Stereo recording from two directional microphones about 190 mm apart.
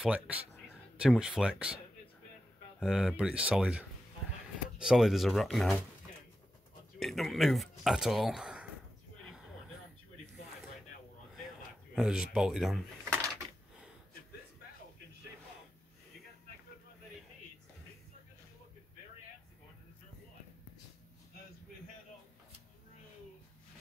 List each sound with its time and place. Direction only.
0.0 s speech: 5° right (ahead or behind)
2.8 s speech: centre (ahead or behind)
7.0 s speech: centre (ahead or behind)
11.9 s speech: 5° right (ahead or behind)